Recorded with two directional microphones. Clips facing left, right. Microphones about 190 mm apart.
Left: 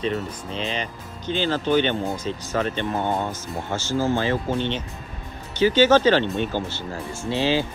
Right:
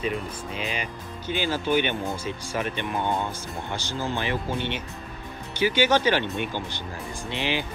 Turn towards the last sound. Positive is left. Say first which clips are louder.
# left 7 dB
turn(degrees=-15)  # may be behind; listen again after turning